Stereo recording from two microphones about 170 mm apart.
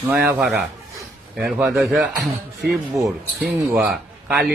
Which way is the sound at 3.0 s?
15° right (ahead or behind).